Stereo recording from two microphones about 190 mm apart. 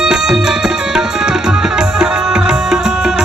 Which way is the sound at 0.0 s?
5° right (ahead or behind).